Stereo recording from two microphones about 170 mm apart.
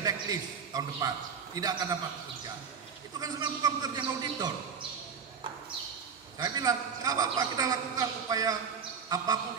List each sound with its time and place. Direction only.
0.0 s a man's voice: 20° right (ahead or behind)
3.2 s a man's voice: 20° right (ahead or behind)
6.3 s a man's voice: 20° right (ahead or behind)